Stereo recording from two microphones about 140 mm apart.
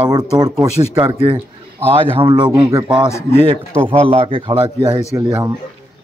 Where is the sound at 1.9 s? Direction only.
40° right (ahead or behind).